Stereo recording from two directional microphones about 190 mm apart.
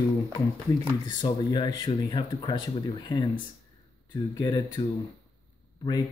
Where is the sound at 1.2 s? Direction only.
20° left (ahead or behind).